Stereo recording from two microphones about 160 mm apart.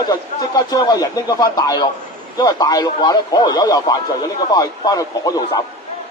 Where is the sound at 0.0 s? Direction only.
25° left (ahead or behind).